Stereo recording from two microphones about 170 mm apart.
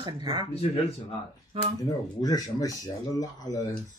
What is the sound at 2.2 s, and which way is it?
Speech, 20° left (ahead or behind).